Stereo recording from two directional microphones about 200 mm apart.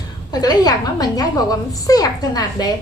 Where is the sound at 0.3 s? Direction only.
20° left (ahead or behind).